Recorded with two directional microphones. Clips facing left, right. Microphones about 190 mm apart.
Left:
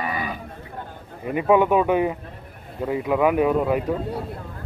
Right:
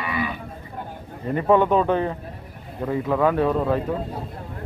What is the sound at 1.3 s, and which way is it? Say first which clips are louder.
Speech: even; 10° left (ahead or behind).